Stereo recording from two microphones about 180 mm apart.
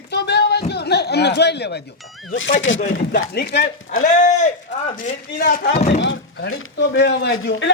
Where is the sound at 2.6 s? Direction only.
90° left.